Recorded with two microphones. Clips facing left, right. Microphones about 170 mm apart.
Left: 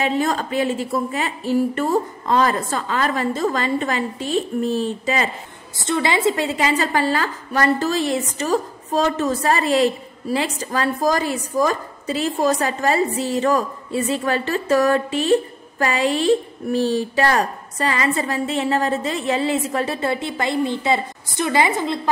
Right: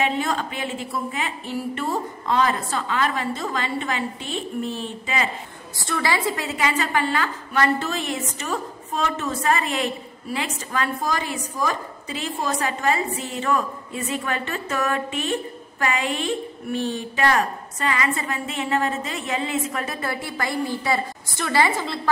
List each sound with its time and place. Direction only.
0.0 s a woman's voice: 40° left (ahead or behind)
5.8 s a woman's voice: 20° left (ahead or behind)